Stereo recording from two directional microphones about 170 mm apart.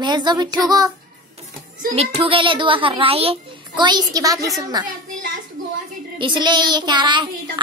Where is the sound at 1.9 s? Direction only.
35° right (ahead or behind).